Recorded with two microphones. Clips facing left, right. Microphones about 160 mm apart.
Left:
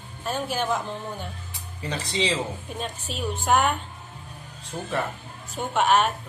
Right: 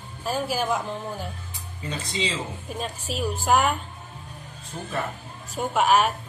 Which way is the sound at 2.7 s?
5° right (ahead or behind).